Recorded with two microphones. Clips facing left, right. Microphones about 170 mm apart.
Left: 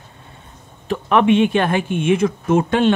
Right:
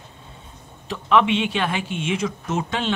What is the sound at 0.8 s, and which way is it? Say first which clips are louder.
Speech: left 3 dB; 50° left (ahead or behind).